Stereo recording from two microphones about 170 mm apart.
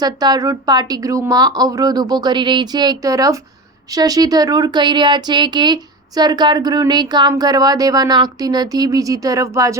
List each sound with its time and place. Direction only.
0.0 s speech: 25° right (ahead or behind)